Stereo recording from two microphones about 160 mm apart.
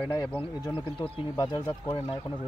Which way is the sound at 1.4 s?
25° left (ahead or behind).